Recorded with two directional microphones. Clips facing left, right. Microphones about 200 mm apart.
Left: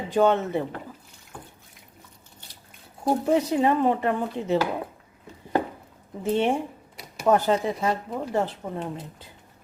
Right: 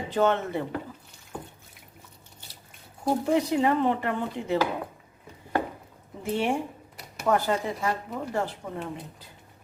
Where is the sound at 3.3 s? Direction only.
20° left (ahead or behind).